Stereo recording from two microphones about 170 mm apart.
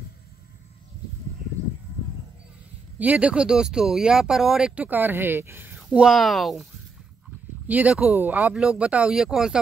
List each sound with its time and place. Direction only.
3.0 s speech: 10° right (ahead or behind)
5.8 s speech: centre (ahead or behind)